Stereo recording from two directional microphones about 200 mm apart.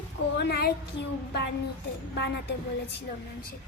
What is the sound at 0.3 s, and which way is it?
Child singing, 55° left (ahead or behind).